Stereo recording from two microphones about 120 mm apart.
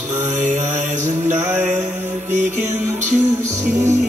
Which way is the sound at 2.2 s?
80° right.